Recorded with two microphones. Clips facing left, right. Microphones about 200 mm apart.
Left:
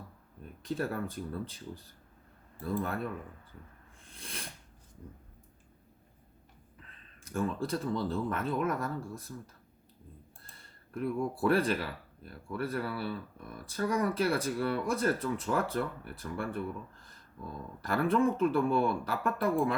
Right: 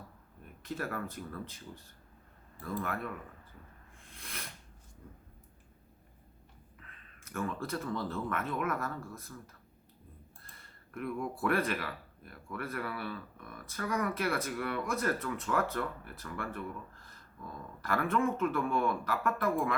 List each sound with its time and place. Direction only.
0.6 s speech: 30° left (ahead or behind)
4.1 s a sound: 30° left (ahead or behind)
7.3 s speech: 30° left (ahead or behind)
10.9 s speech: 30° left (ahead or behind)
17.8 s speech: 30° left (ahead or behind)